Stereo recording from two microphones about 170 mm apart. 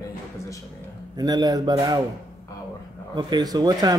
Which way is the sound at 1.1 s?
25° right (ahead or behind).